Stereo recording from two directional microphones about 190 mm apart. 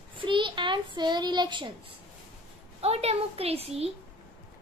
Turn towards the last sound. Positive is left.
turn(degrees=-30)  # may be behind; listen again after turning